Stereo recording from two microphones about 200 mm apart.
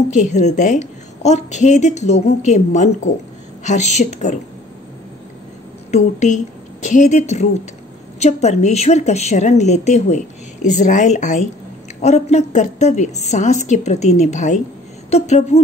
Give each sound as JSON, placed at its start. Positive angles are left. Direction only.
{"t": 0.1, "sound": "a woman's voice", "side_deg": 35}
{"t": 5.9, "sound": "a woman's voice", "side_deg": 35}